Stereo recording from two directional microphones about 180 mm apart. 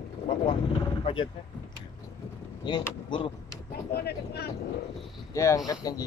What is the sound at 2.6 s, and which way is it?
Speech, 25° left (ahead or behind).